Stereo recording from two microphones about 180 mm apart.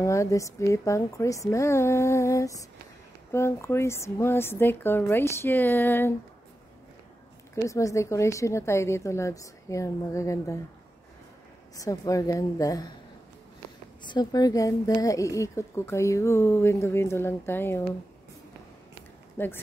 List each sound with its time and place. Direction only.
0.0 s a woman's voice: 15° left (ahead or behind)
7.5 s a woman's voice: 15° left (ahead or behind)
11.7 s a woman's voice: 20° left (ahead or behind)
14.0 s a woman's voice: 25° left (ahead or behind)
19.3 s speech: 10° left (ahead or behind)